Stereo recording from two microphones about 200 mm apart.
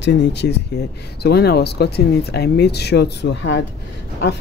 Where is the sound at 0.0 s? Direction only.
55° left (ahead or behind).